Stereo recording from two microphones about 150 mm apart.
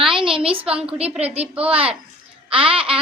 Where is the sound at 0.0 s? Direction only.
5° right (ahead or behind).